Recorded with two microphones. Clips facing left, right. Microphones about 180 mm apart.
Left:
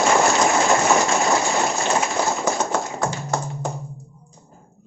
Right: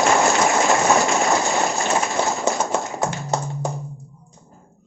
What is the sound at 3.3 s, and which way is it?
Tap, 20° right (ahead or behind).